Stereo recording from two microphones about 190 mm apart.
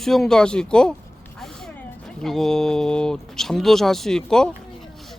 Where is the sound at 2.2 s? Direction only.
Centre (ahead or behind).